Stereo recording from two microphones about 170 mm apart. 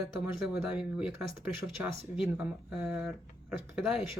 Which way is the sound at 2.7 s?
5° right (ahead or behind).